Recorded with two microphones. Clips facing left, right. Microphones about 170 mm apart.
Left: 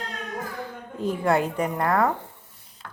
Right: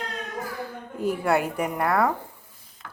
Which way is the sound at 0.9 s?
10° right (ahead or behind).